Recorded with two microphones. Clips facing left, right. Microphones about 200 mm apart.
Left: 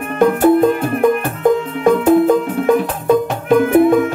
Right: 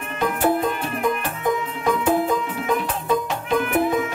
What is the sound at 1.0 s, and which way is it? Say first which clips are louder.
Music: left 9 dB; 60° left (ahead or behind).